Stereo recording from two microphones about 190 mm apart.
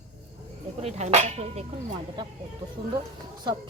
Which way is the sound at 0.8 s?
35° right (ahead or behind).